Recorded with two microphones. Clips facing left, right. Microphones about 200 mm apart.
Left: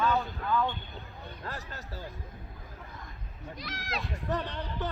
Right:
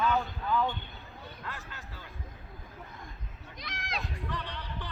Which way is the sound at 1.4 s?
40° left (ahead or behind).